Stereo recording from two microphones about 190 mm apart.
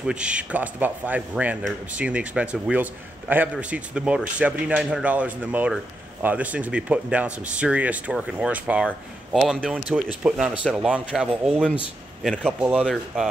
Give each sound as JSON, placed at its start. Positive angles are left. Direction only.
{"t": 0.0, "sound": "a man's voice", "side_deg": -5}